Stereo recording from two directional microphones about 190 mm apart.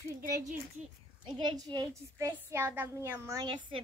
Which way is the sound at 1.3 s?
20° right (ahead or behind).